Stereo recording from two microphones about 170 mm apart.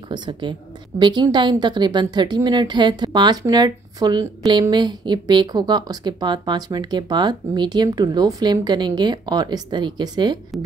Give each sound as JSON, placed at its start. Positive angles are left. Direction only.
{"t": 0.1, "sound": "speech", "side_deg": -25}